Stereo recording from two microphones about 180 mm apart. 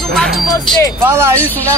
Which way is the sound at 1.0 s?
15° right (ahead or behind).